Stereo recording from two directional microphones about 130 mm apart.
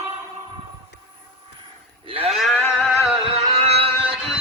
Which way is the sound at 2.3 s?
Centre (ahead or behind).